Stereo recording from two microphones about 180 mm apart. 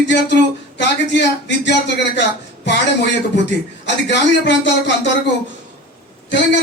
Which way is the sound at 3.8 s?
80° left.